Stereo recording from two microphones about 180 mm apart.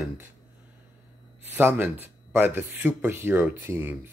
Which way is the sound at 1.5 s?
10° right (ahead or behind).